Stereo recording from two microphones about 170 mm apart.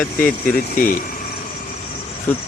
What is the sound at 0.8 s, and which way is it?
Speech, 50° left (ahead or behind).